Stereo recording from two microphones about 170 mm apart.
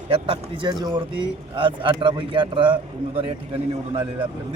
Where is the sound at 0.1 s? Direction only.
30° right (ahead or behind).